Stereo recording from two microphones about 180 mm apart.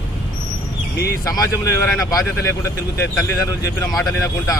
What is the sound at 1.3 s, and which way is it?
Speech, 20° left (ahead or behind).